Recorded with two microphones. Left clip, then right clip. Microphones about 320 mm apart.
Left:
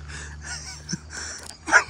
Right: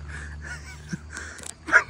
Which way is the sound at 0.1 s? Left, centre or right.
Centre.